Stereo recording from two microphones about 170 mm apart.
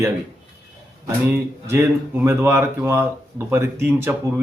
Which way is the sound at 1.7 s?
10° right (ahead or behind).